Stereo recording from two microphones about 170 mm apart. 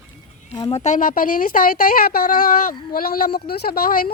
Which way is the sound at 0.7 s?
45° left (ahead or behind).